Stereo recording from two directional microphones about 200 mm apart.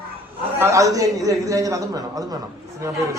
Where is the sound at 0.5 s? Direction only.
15° right (ahead or behind).